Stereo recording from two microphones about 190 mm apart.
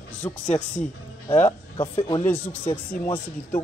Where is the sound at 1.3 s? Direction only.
10° left (ahead or behind).